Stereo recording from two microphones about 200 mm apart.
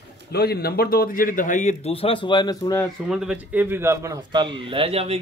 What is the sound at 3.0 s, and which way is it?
Speech, 5° right (ahead or behind).